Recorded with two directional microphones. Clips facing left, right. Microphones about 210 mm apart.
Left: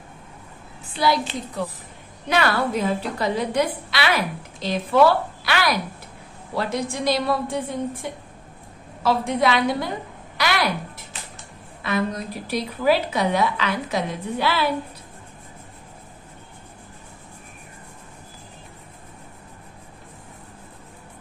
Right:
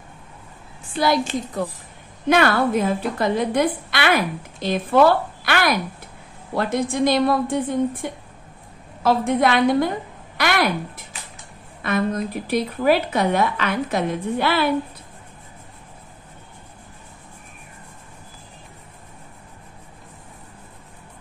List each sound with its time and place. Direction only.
0.9 s a woman's voice: 50° right (ahead or behind)
10.3 s a sound: 55° right (ahead or behind)
11.8 s a woman's voice: 50° right (ahead or behind)